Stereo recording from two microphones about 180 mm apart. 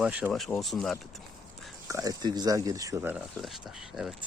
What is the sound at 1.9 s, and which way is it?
Speech, 20° right (ahead or behind).